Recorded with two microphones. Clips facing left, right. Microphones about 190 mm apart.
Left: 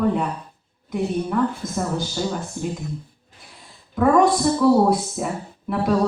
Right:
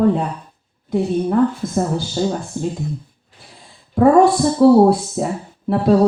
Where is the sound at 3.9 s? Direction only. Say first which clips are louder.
Right 5 dB; 35° right (ahead or behind).